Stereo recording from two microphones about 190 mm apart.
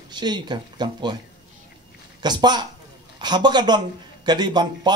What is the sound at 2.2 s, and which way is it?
Speech, 20° right (ahead or behind).